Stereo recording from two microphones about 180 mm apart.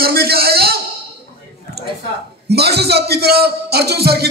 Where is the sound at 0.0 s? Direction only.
60° right (ahead or behind).